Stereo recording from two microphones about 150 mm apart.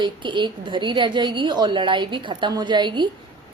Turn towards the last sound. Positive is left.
turn(degrees=-30)  # may be behind; listen again after turning